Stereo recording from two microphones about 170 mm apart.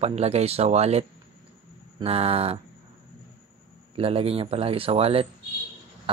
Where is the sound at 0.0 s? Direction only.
35° right (ahead or behind).